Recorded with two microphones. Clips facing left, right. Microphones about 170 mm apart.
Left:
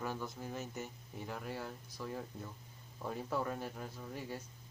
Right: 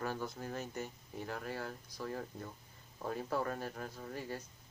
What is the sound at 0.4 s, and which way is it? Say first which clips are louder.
Speech: right 1 dB; 5° left (ahead or behind).